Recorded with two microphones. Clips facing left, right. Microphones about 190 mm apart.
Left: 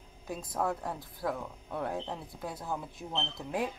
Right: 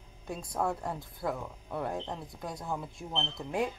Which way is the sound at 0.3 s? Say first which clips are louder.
Even; centre (ahead or behind).